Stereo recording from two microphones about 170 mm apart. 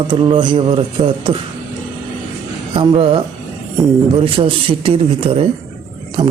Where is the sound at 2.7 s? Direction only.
30° right (ahead or behind).